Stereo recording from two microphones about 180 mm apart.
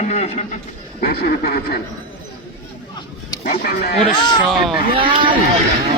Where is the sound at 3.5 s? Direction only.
60° left (ahead or behind).